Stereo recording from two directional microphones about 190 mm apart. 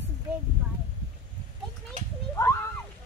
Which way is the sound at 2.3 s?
15° left (ahead or behind).